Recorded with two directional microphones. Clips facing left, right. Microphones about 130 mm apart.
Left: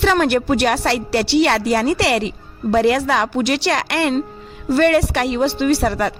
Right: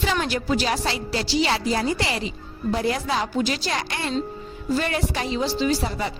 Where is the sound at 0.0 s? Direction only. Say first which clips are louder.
Left 9 dB; 60° left (ahead or behind).